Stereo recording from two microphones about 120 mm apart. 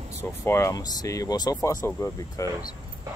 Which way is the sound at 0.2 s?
25° left (ahead or behind).